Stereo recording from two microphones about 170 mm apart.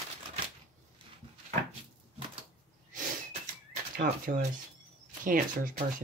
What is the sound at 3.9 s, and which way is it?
Speech, 55° right (ahead or behind).